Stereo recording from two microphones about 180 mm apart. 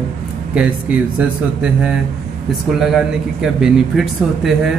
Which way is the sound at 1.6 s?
5° right (ahead or behind).